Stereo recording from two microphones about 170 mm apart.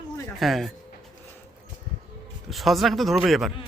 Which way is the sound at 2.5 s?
Centre (ahead or behind).